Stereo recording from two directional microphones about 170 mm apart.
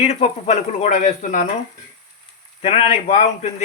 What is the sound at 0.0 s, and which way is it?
Speech, 40° left (ahead or behind).